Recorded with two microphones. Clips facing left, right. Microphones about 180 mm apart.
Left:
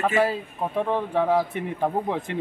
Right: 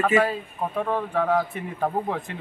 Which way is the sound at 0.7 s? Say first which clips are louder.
Left 2 dB; 20° left (ahead or behind).